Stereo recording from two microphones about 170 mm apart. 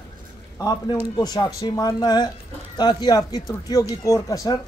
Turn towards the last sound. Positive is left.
turn(degrees=20)  # may be behind; listen again after turning